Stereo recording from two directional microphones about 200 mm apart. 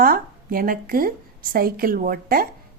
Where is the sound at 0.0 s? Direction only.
45° right (ahead or behind).